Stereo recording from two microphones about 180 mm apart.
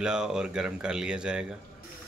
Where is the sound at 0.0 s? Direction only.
5° right (ahead or behind).